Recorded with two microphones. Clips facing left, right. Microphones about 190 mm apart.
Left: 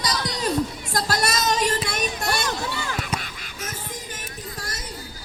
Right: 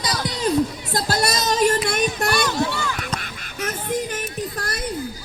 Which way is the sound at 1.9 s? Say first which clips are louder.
Right 5 dB; 60° right (ahead or behind).